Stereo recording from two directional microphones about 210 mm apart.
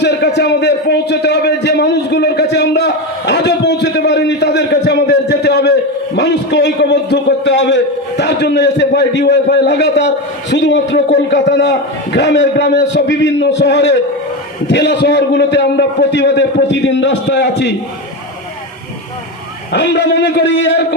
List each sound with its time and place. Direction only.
0.0 s a man's voice: 55° left (ahead or behind)
19.7 s a man's voice: 55° left (ahead or behind)